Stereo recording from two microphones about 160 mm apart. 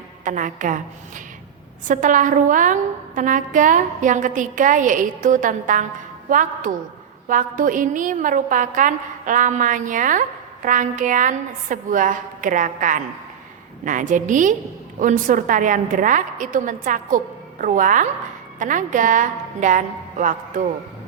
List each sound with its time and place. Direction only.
0.3 s a woman's voice: 55° right (ahead or behind)